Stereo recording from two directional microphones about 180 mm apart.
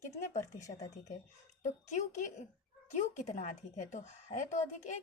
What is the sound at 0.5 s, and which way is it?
Speech, 20° left (ahead or behind).